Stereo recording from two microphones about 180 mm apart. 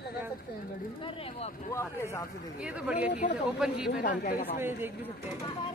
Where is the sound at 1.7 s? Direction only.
15° left (ahead or behind).